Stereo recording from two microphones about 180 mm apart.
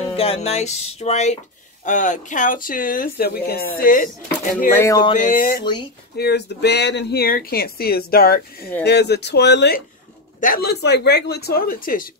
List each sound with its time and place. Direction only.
0.1 s speech: 35° left (ahead or behind); by 4.1 s 50° left (ahead or behind)
4.7 s music: 15° left (ahead or behind)
5.1 s speech: 45° left (ahead or behind)
5.6 s speech: 25° left (ahead or behind)
6.1 s speech: 65° left (ahead or behind)
8.8 s speech: 65° left (ahead or behind)
10.4 s speech: 55° left (ahead or behind)